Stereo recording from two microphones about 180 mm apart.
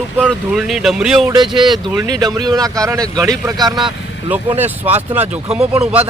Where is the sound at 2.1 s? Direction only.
20° right (ahead or behind).